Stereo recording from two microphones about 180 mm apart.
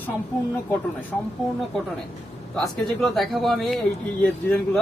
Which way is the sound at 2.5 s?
5° left (ahead or behind).